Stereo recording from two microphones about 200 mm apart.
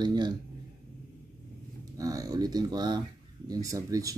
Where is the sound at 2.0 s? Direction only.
15° right (ahead or behind).